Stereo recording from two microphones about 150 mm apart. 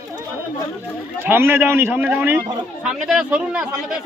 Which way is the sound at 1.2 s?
15° right (ahead or behind).